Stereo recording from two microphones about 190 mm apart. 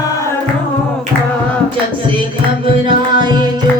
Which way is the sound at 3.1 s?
25° right (ahead or behind).